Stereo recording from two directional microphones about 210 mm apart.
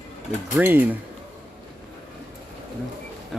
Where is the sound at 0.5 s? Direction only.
10° right (ahead or behind).